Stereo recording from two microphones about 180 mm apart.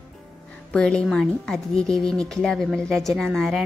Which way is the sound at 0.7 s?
5° left (ahead or behind).